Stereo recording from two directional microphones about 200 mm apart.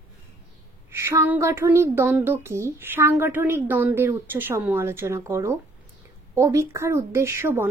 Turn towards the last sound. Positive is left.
turn(degrees=-10)  # may be behind; listen again after turning